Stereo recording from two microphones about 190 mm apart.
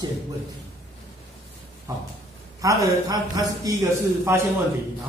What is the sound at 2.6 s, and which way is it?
A man's voice, 20° right (ahead or behind).